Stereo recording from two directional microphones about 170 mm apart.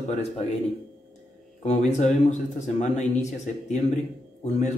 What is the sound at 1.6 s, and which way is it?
Speech, 40° left (ahead or behind).